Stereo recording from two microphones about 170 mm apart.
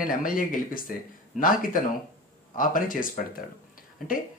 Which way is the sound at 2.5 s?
55° left (ahead or behind).